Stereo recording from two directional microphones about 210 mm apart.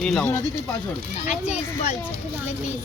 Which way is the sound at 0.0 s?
5° left (ahead or behind).